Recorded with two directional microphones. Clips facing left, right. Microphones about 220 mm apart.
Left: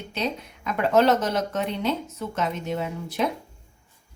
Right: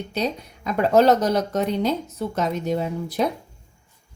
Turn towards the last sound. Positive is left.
turn(degrees=-35)  # may be behind; listen again after turning